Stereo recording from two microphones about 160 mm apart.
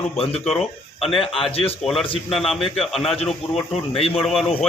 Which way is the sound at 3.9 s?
40° left (ahead or behind).